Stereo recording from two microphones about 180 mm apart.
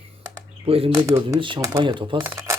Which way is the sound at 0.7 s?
30° right (ahead or behind).